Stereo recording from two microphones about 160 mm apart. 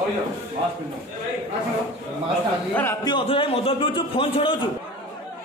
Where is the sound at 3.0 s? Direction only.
30° left (ahead or behind).